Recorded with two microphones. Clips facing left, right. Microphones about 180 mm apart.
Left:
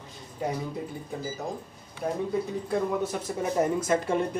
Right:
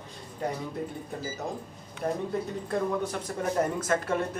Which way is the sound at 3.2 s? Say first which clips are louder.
Left 2 dB; 10° left (ahead or behind).